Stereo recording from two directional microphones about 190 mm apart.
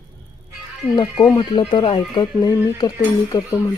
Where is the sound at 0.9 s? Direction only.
25° left (ahead or behind).